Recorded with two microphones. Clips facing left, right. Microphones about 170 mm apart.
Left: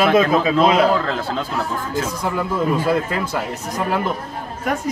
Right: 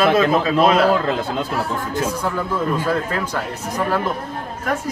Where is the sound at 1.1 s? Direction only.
15° right (ahead or behind).